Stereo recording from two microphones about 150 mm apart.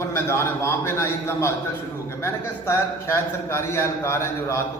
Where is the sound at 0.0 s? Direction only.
15° left (ahead or behind).